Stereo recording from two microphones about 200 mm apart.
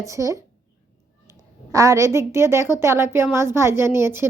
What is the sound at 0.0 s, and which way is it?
A woman's voice, 15° right (ahead or behind).